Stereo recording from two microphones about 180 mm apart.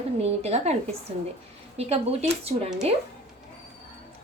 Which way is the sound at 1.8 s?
35° right (ahead or behind).